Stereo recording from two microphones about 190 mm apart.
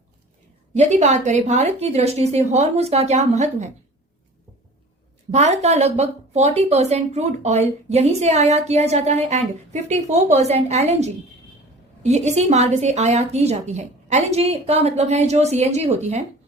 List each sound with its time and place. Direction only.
0.8 s speech: 35° right (ahead or behind)
5.3 s speech: 35° right (ahead or behind)